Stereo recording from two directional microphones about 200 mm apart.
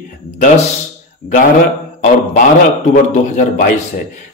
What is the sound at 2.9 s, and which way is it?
Speech, 40° left (ahead or behind).